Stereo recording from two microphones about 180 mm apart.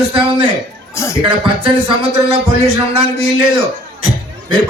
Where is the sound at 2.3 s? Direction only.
35° right (ahead or behind).